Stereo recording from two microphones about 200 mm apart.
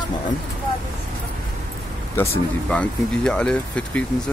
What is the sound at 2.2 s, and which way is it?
Speech, 10° left (ahead or behind).